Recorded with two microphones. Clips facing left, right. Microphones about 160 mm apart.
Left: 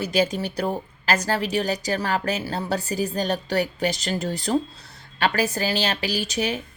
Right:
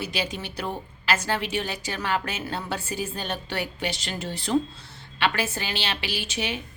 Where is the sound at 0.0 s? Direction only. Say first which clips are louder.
Left 8 dB; 40° left (ahead or behind).